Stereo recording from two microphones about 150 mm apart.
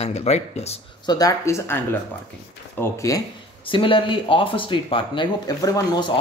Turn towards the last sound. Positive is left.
turn(degrees=30)  # may be behind; listen again after turning